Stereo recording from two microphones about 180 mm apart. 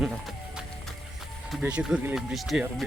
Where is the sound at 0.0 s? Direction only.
5° right (ahead or behind).